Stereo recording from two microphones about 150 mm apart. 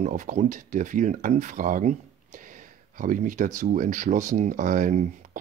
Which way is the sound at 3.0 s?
60° right (ahead or behind).